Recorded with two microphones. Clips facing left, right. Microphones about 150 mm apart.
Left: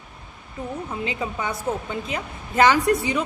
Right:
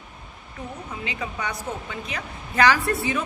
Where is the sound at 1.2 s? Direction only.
25° left (ahead or behind).